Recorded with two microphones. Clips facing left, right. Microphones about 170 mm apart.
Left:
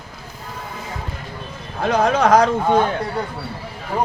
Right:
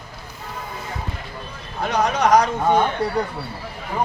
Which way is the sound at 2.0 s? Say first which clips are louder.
Left 2 dB; 50° left (ahead or behind).